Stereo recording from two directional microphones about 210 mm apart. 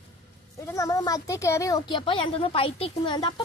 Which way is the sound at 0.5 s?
15° left (ahead or behind).